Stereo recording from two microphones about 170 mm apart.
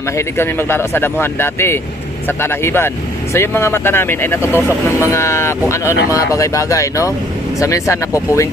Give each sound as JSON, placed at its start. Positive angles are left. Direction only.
{"t": 0.1, "sound": "speech", "side_deg": 15}